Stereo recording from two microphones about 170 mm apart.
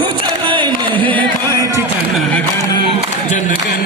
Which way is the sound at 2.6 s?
20° left (ahead or behind).